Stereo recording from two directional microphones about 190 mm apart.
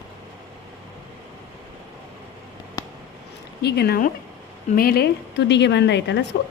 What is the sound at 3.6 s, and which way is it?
A woman's voice, 60° left (ahead or behind).